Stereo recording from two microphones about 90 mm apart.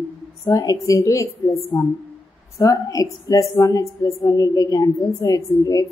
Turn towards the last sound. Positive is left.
turn(degrees=40)  # may be behind; listen again after turning